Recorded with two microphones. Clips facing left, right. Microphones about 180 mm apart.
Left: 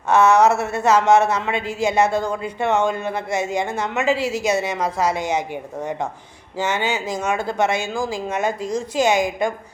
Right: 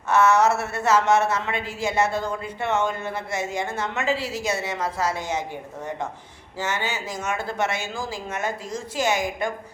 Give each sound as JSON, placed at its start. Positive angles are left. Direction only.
{"t": 0.1, "sound": "a woman's voice", "side_deg": 15}
{"t": 6.6, "sound": "a woman's voice", "side_deg": 20}